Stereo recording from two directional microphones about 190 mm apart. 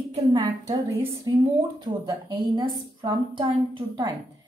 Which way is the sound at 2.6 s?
25° right (ahead or behind).